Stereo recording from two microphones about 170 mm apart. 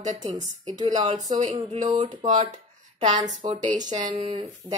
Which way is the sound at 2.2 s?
45° right (ahead or behind).